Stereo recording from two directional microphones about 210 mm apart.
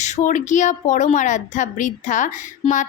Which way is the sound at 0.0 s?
35° left (ahead or behind).